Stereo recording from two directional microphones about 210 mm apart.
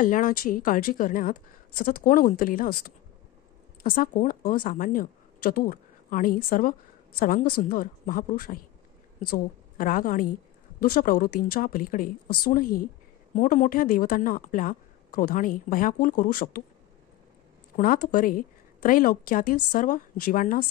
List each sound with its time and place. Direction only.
0.0 s a woman's voice: 40° left (ahead or behind)
17.7 s a woman's voice: 40° left (ahead or behind)